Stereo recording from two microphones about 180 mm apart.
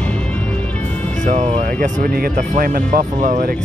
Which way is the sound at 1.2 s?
45° right (ahead or behind).